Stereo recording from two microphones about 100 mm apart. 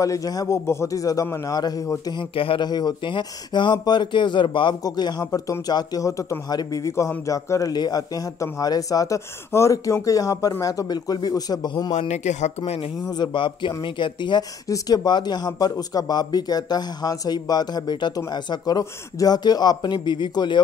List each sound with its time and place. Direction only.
0.0 s speech: 35° left (ahead or behind)
2.3 s speech: 65° left (ahead or behind)
2.6 s speech: 45° left (ahead or behind)
12.6 s speech: 90° left
13.1 s speech: 50° left (ahead or behind)